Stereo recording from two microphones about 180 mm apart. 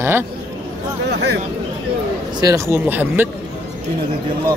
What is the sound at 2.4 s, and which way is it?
Speech, 15° right (ahead or behind).